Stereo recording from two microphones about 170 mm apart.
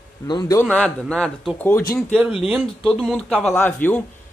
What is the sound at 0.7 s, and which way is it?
Speech, 5° left (ahead or behind).